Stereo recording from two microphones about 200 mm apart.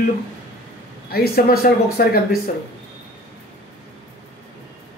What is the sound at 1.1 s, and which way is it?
Speech, 50° left (ahead or behind).